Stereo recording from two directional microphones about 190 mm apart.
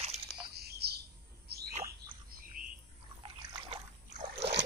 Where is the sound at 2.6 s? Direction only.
45° right (ahead or behind).